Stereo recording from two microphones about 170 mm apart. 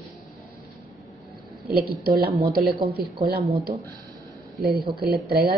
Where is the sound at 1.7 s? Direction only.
65° right (ahead or behind).